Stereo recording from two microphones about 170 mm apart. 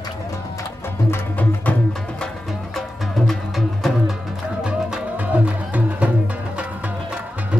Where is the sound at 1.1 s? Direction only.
10° left (ahead or behind).